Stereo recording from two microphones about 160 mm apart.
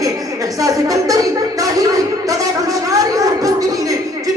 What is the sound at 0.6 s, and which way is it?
Music, 20° right (ahead or behind).